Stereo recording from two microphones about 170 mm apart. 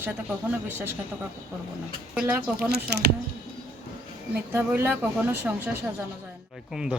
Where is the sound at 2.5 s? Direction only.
65° right (ahead or behind).